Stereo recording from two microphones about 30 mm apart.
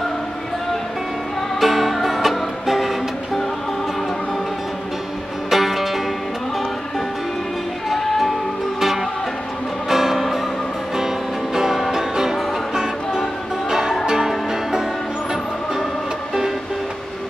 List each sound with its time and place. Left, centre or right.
1.6 s music: centre
5.5 s music: centre
8.7 s music: centre
11.5 s music: centre